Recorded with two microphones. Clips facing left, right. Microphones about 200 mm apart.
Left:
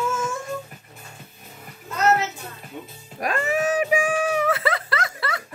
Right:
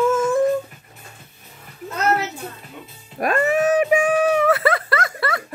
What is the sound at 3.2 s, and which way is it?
Wail, 55° right (ahead or behind).